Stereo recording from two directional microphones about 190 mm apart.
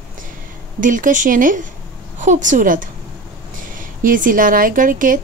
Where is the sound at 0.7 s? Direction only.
45° right (ahead or behind).